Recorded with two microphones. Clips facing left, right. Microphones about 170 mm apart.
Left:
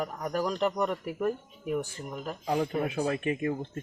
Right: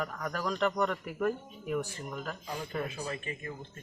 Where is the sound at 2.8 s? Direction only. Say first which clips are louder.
Left 9 dB; 65° left (ahead or behind).